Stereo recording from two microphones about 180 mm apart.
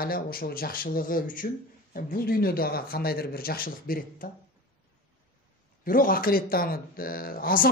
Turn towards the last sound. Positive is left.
turn(degrees=55)  # may be behind; listen again after turning